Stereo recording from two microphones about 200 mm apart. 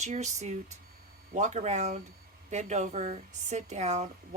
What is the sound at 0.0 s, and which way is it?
Speech, 35° right (ahead or behind).